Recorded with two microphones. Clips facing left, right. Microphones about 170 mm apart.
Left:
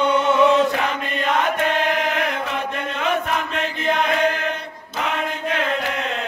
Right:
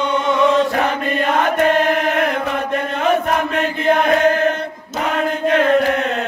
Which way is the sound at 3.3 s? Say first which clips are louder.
Right 5 dB; 55° right (ahead or behind).